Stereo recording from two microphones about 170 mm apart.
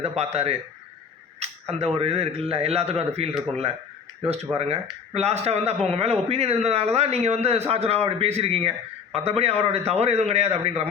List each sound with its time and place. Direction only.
0.0 s speech: 40° right (ahead or behind)
4.5 s speech: 35° right (ahead or behind)